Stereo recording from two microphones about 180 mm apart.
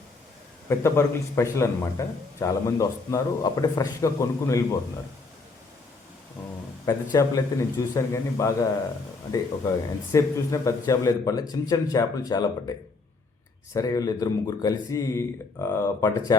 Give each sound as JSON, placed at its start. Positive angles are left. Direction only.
{"t": 0.7, "sound": "speech", "side_deg": 15}
{"t": 6.8, "sound": "speech", "side_deg": 20}
{"t": 13.7, "sound": "speech", "side_deg": 20}